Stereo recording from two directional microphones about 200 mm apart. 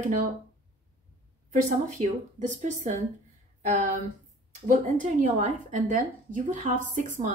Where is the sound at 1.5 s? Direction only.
40° right (ahead or behind).